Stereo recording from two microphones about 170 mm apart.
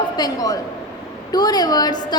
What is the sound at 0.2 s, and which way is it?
A woman's voice, 20° left (ahead or behind).